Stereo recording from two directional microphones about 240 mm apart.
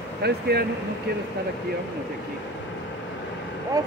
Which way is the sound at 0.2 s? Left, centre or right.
Right.